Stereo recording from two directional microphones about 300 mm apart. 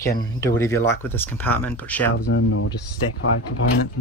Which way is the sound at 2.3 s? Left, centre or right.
Left.